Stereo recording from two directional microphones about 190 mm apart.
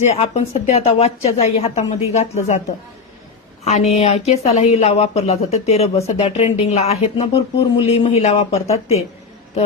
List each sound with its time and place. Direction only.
0.0 s speech: 35° left (ahead or behind)
3.6 s a woman's voice: 35° left (ahead or behind)